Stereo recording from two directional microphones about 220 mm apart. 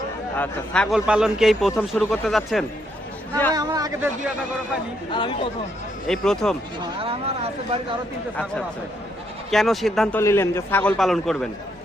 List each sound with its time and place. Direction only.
0.3 s a man's voice: 5° left (ahead or behind)
3.5 s speech: 15° right (ahead or behind)
5.1 s speech: 20° left (ahead or behind)
6.1 s a man's voice: centre (ahead or behind)
7.0 s speech: 25° right (ahead or behind)
9.5 s a man's voice: centre (ahead or behind)